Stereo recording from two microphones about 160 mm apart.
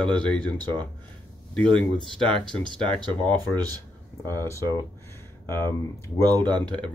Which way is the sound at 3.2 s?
10° left (ahead or behind).